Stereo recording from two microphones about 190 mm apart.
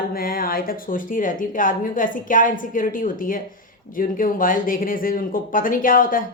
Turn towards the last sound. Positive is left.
turn(degrees=45)  # may be behind; listen again after turning